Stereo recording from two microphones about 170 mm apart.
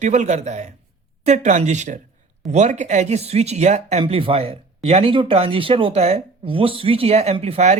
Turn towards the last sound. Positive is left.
turn(degrees=-40)  # may be behind; listen again after turning